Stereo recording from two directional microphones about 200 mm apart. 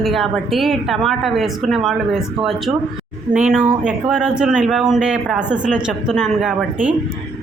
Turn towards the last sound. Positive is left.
turn(degrees=0)  # may be behind; listen again after turning